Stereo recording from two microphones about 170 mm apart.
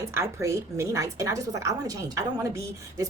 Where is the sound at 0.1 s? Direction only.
15° right (ahead or behind).